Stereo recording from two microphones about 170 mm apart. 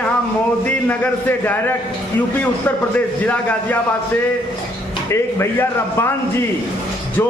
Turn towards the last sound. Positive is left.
turn(degrees=15)  # may be behind; listen again after turning